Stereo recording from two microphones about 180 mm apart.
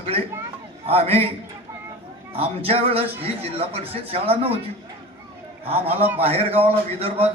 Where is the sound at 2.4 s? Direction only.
30° right (ahead or behind).